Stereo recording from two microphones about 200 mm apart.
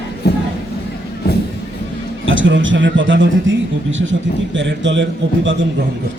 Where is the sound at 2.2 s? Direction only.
70° right (ahead or behind).